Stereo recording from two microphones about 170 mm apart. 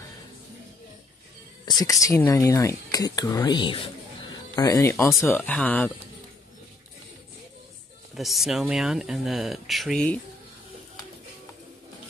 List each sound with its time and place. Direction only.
1.8 s speech: 20° left (ahead or behind)
8.1 s speech: centre (ahead or behind)